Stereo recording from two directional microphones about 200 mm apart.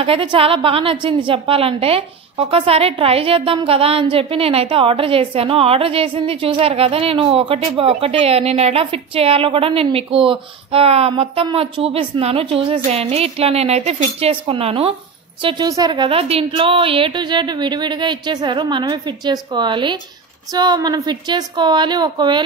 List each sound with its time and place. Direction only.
0.0 s a woman's voice: 25° right (ahead or behind)